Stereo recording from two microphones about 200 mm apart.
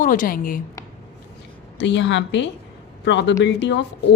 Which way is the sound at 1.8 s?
65° left (ahead or behind).